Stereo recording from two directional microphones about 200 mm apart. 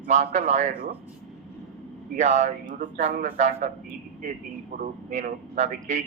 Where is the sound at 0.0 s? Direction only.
35° right (ahead or behind).